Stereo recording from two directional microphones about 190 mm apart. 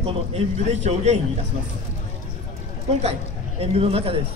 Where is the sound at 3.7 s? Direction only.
30° right (ahead or behind).